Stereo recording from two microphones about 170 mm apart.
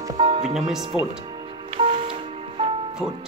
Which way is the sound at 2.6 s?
30° right (ahead or behind).